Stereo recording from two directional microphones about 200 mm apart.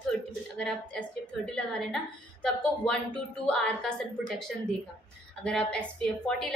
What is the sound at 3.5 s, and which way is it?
A woman's voice, 5° left (ahead or behind).